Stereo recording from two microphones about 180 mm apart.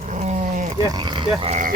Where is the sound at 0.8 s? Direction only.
25° right (ahead or behind).